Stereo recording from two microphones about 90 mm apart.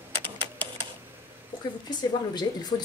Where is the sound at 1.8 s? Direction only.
50° left (ahead or behind).